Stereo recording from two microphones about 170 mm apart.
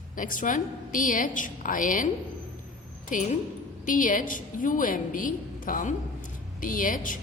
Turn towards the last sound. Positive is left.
turn(degrees=55)  # may be behind; listen again after turning